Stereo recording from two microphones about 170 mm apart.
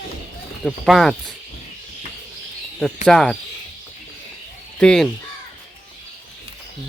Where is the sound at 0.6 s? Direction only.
Centre (ahead or behind).